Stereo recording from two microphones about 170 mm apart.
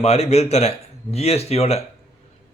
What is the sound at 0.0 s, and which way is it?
A man's voice, 40° left (ahead or behind).